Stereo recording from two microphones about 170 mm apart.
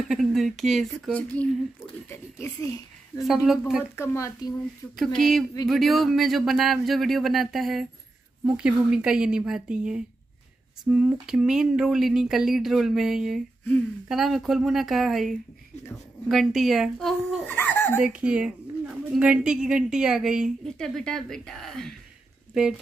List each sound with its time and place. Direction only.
0.1 s a woman's voice: centre (ahead or behind); by 2.7 s 15° left (ahead or behind)
3.4 s a woman's voice: centre (ahead or behind)
3.9 s speech: 15° left (ahead or behind)
4.9 s a woman's voice: centre (ahead or behind)
17.5 s speech: 10° left (ahead or behind)
17.9 s a woman's voice: 5° right (ahead or behind)